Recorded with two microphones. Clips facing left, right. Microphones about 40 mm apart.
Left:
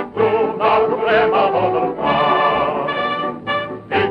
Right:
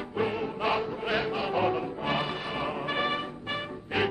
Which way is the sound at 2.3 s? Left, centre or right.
Left.